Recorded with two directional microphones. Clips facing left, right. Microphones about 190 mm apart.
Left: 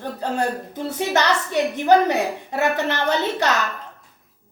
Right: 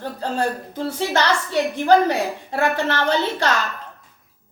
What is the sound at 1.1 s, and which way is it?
A woman's voice, 20° left (ahead or behind).